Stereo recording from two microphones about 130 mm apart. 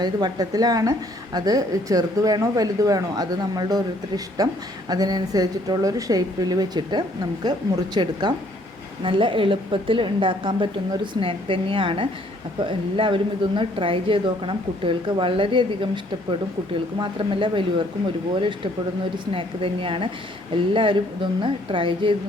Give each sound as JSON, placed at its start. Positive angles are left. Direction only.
{"t": 0.0, "sound": "a woman's voice", "side_deg": -30}
{"t": 17.0, "sound": "a woman's voice", "side_deg": -40}